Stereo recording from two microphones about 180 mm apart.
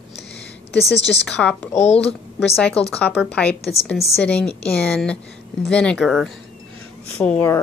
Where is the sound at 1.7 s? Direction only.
40° left (ahead or behind).